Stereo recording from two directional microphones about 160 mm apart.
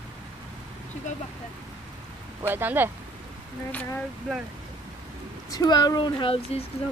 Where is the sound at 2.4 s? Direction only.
15° right (ahead or behind).